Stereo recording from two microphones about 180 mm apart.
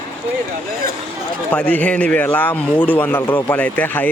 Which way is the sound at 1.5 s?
5° left (ahead or behind).